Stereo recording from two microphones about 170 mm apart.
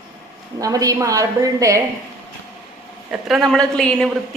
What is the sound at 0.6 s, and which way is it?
A woman's voice, 20° right (ahead or behind).